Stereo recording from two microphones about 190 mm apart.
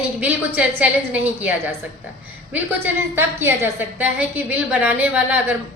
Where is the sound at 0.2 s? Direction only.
10° right (ahead or behind).